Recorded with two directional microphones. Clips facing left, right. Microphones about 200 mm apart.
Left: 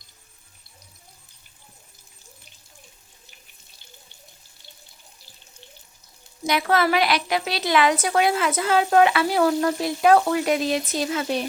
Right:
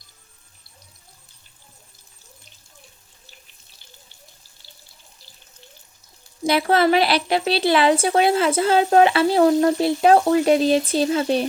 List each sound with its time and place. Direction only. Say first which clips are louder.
6.4 s a woman's voice: right 4 dB; 30° right (ahead or behind)